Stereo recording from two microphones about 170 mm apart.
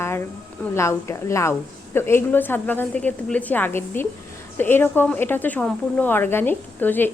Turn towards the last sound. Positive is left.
turn(degrees=10)  # may be behind; listen again after turning